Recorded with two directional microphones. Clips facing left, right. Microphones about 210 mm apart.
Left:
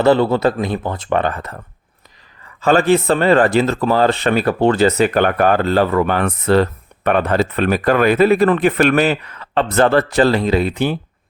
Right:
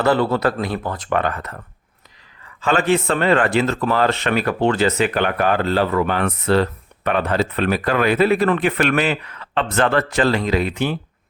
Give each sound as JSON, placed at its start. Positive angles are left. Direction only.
{"t": 0.0, "sound": "speech", "side_deg": 25}